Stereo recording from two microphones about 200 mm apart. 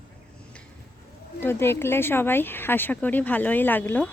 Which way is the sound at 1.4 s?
10° left (ahead or behind).